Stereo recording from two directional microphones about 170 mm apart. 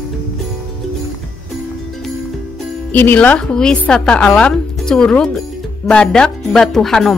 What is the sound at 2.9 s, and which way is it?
A woman's voice, 10° left (ahead or behind).